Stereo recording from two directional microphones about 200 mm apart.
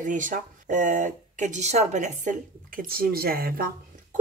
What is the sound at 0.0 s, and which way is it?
A woman's voice, 40° right (ahead or behind).